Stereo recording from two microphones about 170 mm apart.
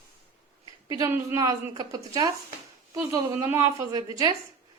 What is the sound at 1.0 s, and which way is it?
A woman's voice, 20° right (ahead or behind).